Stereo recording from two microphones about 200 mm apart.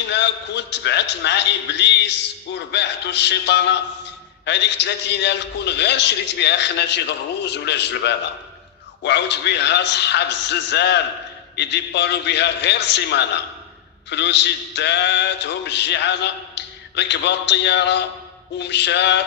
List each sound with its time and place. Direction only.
0.1 s a man's voice: 60° left (ahead or behind)